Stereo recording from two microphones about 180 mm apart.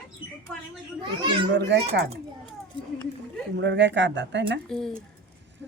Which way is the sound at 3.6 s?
75° right (ahead or behind).